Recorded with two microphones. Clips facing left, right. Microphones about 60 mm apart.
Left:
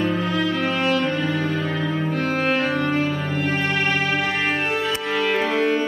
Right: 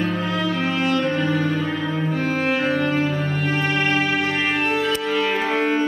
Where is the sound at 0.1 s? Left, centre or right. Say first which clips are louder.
Left 1 dB; centre.